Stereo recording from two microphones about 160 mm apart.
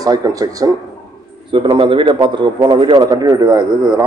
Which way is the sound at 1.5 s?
35° right (ahead or behind).